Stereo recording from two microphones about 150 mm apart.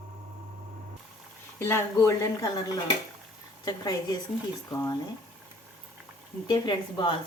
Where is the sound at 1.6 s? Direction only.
15° left (ahead or behind).